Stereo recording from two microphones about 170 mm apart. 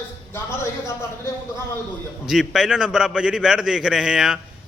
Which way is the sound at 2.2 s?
Centre (ahead or behind).